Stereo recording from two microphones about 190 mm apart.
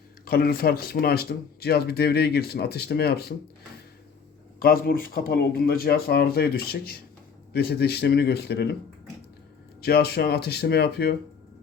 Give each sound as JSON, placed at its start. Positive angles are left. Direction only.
{"t": 0.3, "sound": "speech", "side_deg": 50}
{"t": 4.6, "sound": "speech", "side_deg": 50}
{"t": 9.8, "sound": "speech", "side_deg": 55}